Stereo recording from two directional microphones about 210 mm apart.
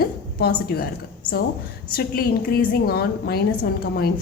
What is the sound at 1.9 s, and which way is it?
A woman's voice, 45° left (ahead or behind).